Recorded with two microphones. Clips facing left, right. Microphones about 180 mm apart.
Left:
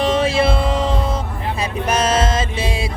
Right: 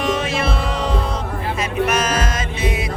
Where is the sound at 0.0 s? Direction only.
30° left (ahead or behind).